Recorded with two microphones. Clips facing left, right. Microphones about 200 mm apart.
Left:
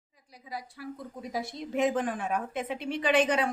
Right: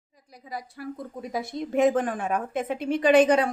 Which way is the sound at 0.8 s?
50° right (ahead or behind).